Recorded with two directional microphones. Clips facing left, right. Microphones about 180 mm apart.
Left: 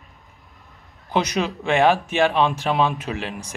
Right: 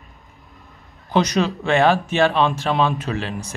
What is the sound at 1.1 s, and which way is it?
Speech, 10° left (ahead or behind).